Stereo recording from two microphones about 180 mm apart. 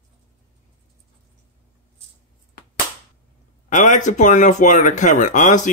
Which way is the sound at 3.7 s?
45° left (ahead or behind).